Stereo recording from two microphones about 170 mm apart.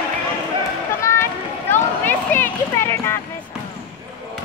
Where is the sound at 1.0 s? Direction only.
15° left (ahead or behind).